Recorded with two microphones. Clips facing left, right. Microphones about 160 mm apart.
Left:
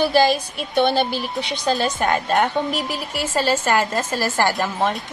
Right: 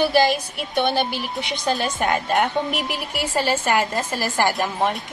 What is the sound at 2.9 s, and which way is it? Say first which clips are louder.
A woman's voice: left 1 dB; 15° right (ahead or behind).